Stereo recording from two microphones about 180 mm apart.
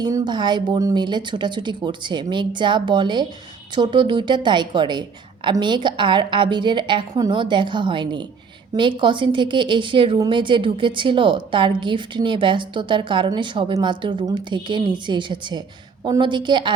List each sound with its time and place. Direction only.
0.0 s a woman's voice: 20° right (ahead or behind)